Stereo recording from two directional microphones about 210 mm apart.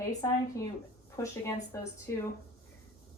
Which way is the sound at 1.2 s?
15° left (ahead or behind).